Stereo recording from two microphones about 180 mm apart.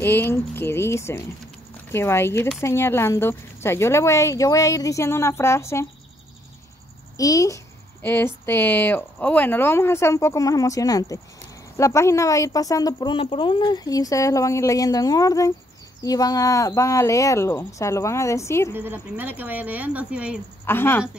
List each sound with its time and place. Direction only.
0.0 s speech: 10° left (ahead or behind)
7.2 s speech: 20° left (ahead or behind)
18.7 s speech: 10° right (ahead or behind)
20.6 s speech: 10° left (ahead or behind)